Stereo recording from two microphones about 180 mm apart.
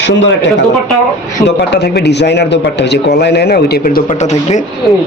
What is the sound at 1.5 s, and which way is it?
Speech, 65° left (ahead or behind).